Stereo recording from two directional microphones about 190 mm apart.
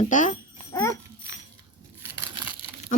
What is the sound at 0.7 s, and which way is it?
Dog, 15° left (ahead or behind).